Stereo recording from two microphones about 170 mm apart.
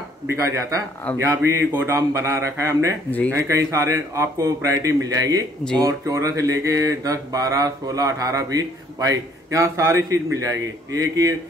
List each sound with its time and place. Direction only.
0.3 s speech: 15° right (ahead or behind)
5.8 s mantra: 20° right (ahead or behind)